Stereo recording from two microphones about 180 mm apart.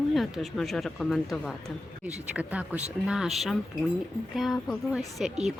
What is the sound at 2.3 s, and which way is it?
A woman's voice, 10° right (ahead or behind).